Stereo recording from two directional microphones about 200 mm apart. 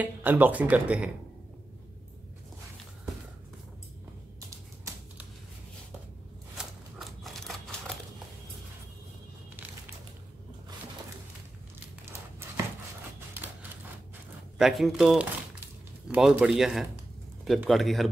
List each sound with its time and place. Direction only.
0.0 s speech: 10° right (ahead or behind)
4.5 s typewriter: 15° right (ahead or behind)
6.6 s typewriter: centre (ahead or behind)
14.6 s a man's voice: centre (ahead or behind)